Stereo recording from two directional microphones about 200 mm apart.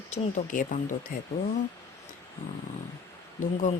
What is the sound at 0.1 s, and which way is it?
Speech, 40° left (ahead or behind).